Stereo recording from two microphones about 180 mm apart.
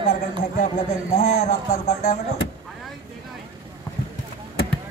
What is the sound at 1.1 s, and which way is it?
Speech, 40° left (ahead or behind).